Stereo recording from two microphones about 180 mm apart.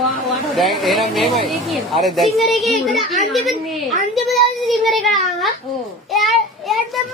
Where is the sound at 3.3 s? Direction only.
Centre (ahead or behind).